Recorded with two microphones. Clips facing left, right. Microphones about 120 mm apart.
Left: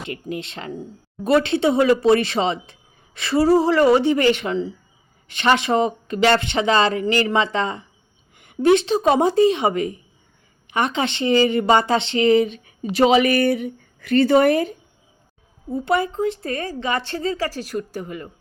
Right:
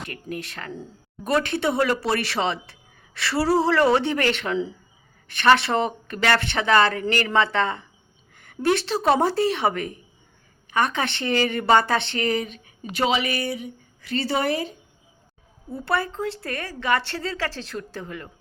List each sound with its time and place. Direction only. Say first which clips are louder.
0.0 s speech: left 4 dB; 20° left (ahead or behind)
1.4 s speech: left 5 dB; 50° right (ahead or behind)
1.6 s speech: left 7 dB; 20° left (ahead or behind)
9.7 s speech: left 6 dB; 55° right (ahead or behind)
10.7 s speech: left 2 dB; 20° left (ahead or behind)
12.6 s speech: left 7 dB; 40° left (ahead or behind)
15.7 s speech: left 5 dB; 20° left (ahead or behind)